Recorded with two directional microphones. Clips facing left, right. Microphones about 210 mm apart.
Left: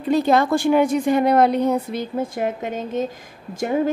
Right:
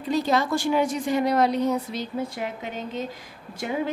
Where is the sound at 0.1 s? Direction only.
55° left (ahead or behind).